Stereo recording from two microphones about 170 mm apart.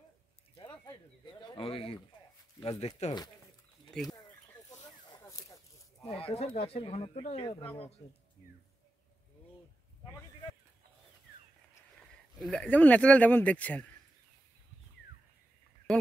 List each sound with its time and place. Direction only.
0.6 s a sound: 25° left (ahead or behind)
1.5 s speech: 30° left (ahead or behind)
3.9 s speech: 5° left (ahead or behind)
4.6 s a sound: 20° left (ahead or behind)
6.0 s speech: 35° left (ahead or behind)
12.4 s speech: 5° left (ahead or behind)